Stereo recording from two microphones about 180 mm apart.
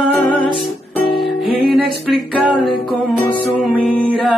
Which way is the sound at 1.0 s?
25° left (ahead or behind).